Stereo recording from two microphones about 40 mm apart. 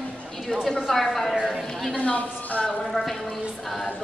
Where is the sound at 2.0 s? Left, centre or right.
Left.